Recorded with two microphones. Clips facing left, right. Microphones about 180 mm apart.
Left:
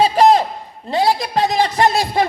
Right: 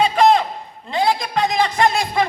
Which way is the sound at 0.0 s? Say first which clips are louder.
Left 2 dB; 35° left (ahead or behind).